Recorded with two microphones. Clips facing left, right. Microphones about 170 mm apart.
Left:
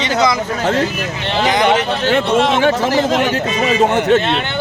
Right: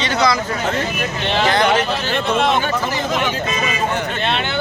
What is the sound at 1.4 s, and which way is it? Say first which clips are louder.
Speech: left 2 dB; 15° left (ahead or behind).